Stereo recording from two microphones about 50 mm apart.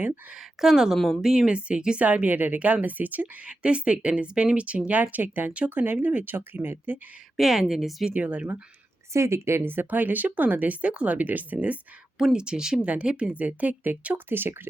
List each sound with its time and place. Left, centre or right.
0.3 s speech: centre
0.9 s speech: centre
1.2 s speech: centre
2.0 s speech: right
3.6 s speech: right
7.3 s speech: centre
8.1 s speech: right
9.1 s speech: right
9.6 s speech: right
12.2 s speech: centre
12.8 s speech: right
14.3 s speech: right